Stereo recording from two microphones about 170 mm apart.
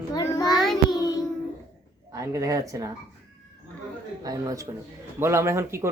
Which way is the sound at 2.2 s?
20° right (ahead or behind).